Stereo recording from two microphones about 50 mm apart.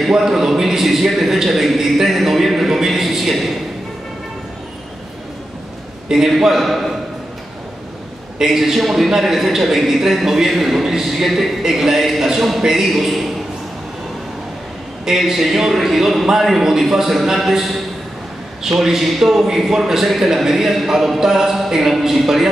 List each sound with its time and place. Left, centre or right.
0.1 s a sound: centre
6.0 s a man's voice: centre
8.4 s a man's voice: centre
15.0 s a man's voice: centre